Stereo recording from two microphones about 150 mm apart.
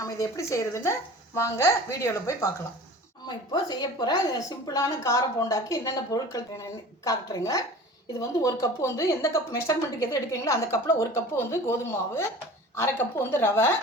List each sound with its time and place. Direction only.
0.0 s a woman's voice: 20° left (ahead or behind)